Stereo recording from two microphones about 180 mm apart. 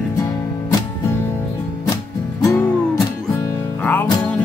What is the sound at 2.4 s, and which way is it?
Music, 15° left (ahead or behind).